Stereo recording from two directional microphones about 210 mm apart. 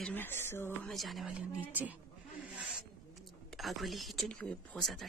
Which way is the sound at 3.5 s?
Centre (ahead or behind).